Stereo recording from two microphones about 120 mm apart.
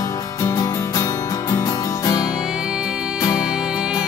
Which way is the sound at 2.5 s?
5° right (ahead or behind).